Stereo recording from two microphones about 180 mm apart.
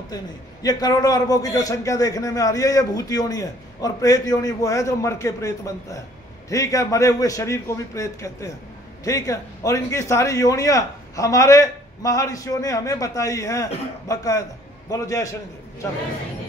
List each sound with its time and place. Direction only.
0.1 s a man's voice: 20° left (ahead or behind)